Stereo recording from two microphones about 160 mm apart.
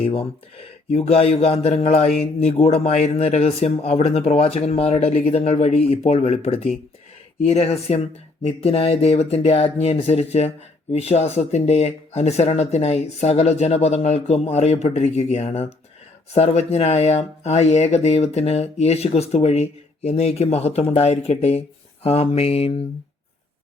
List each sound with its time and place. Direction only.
0.0 s speech: 35° left (ahead or behind)